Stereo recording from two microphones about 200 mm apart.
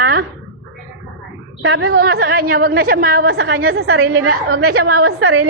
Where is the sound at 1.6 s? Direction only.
90° right.